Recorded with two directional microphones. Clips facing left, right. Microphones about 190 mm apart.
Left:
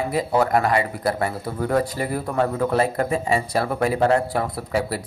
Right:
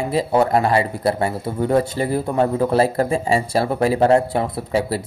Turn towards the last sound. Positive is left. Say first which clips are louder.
# right 3 dB
turn(degrees=-25)  # may be behind; listen again after turning